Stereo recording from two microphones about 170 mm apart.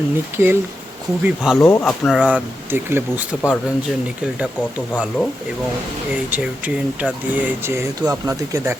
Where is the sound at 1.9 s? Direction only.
Centre (ahead or behind).